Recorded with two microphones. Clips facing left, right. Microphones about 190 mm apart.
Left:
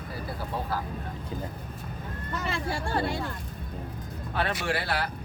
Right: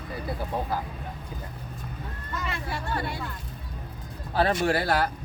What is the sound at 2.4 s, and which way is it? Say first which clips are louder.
Speech: left 2 dB; 30° left (ahead or behind).